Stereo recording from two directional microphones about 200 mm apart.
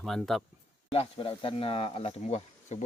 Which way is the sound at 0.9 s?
30° left (ahead or behind).